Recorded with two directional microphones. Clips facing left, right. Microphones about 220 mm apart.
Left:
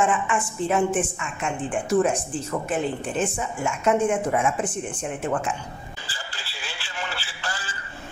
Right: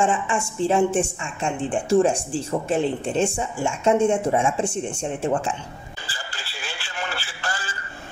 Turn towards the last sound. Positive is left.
turn(degrees=-45)  # may be behind; listen again after turning